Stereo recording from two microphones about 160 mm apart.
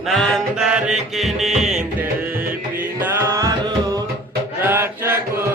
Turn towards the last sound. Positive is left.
turn(degrees=-15)  # may be behind; listen again after turning